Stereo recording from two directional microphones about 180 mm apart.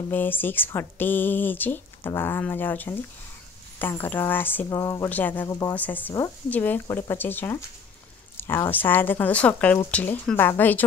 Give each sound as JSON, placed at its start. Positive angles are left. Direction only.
{"t": 0.1, "sound": "speech", "side_deg": 10}
{"t": 4.0, "sound": "speech", "side_deg": 10}